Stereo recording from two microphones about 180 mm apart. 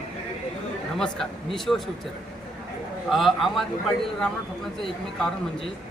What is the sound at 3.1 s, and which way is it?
Speech, centre (ahead or behind).